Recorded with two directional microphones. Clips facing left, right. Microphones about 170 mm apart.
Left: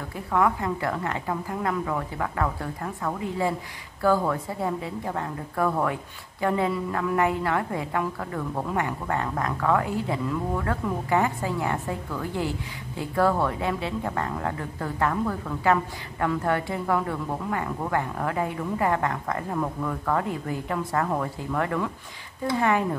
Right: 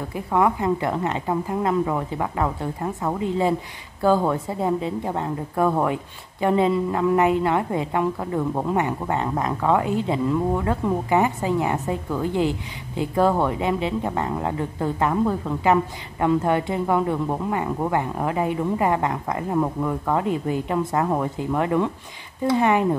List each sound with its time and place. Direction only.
0.1 s a woman's voice: 20° right (ahead or behind)